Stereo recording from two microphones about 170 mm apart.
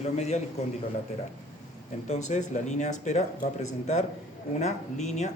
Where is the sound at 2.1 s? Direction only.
45° left (ahead or behind).